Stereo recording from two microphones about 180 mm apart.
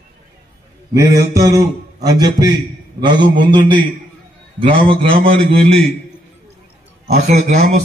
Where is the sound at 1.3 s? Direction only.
20° right (ahead or behind).